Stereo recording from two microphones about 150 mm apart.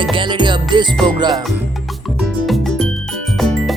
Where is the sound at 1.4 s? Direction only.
Centre (ahead or behind).